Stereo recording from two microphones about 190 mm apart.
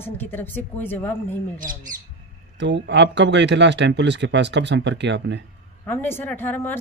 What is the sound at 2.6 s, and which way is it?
Speech, 65° right (ahead or behind).